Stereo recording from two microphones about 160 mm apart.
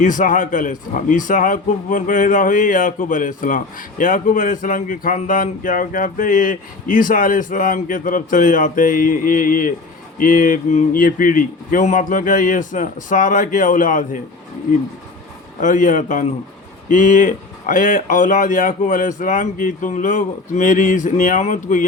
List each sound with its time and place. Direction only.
0.0 s a man's voice: 55° left (ahead or behind)
15.6 s a man's voice: 55° left (ahead or behind)